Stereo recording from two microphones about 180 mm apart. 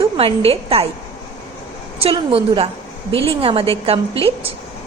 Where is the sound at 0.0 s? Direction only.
30° right (ahead or behind).